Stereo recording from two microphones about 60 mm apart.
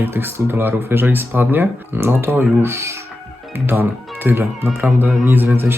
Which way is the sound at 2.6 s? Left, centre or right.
Right.